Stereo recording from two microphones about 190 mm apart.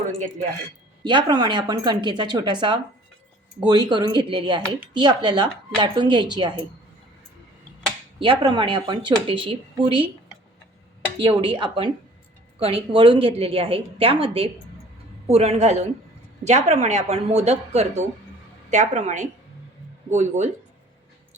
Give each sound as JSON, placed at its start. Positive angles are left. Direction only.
{"t": 1.0, "sound": "speech", "side_deg": -25}
{"t": 8.2, "sound": "speech", "side_deg": -25}
{"t": 11.3, "sound": "speech", "side_deg": -25}